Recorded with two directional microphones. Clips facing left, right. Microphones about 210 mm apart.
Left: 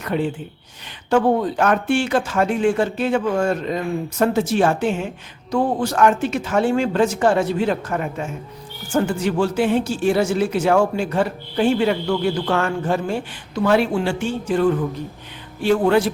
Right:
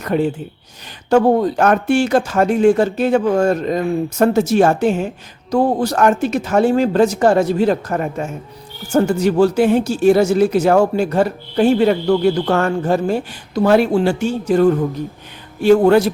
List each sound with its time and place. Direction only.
0.0 s speech: 40° right (ahead or behind)